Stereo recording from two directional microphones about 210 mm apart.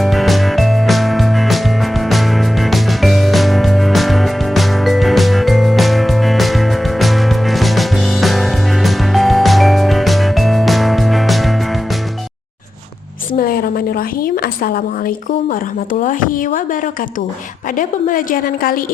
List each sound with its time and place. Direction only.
0.0 s music: centre (ahead or behind)
13.4 s a sound: 45° left (ahead or behind)
17.7 s a woman's voice: 40° left (ahead or behind)